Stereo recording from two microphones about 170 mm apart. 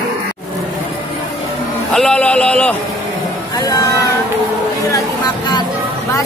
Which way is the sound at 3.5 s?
20° left (ahead or behind).